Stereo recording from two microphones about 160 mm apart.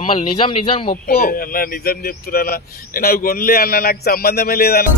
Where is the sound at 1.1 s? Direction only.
65° left (ahead or behind).